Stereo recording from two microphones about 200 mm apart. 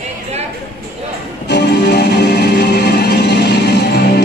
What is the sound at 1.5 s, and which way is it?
Music, 55° left (ahead or behind).